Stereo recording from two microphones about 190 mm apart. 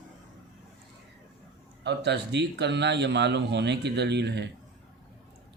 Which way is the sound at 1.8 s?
65° right (ahead or behind).